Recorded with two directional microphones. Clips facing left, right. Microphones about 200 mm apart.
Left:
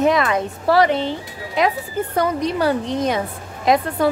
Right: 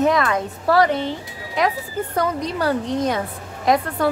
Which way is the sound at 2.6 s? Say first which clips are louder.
Right 1 dB; 15° left (ahead or behind).